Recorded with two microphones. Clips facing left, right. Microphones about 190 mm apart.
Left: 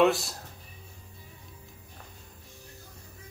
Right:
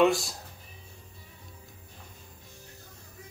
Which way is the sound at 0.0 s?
Centre (ahead or behind).